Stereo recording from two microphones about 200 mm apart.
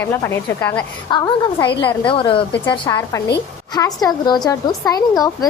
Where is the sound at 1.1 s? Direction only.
25° left (ahead or behind).